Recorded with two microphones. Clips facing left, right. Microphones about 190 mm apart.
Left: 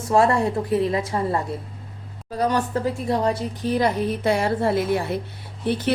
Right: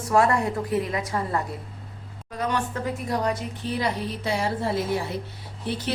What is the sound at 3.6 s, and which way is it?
Speech, 45° left (ahead or behind).